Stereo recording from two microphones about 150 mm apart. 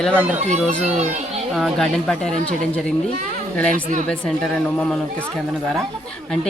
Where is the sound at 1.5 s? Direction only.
Centre (ahead or behind).